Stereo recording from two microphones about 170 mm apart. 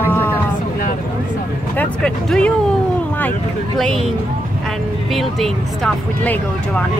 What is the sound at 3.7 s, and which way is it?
Speech, centre (ahead or behind).